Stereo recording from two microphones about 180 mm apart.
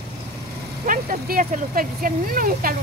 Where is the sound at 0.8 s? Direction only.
55° right (ahead or behind).